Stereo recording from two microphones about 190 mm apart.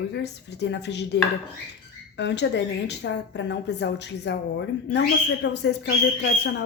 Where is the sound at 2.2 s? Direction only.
65° left (ahead or behind).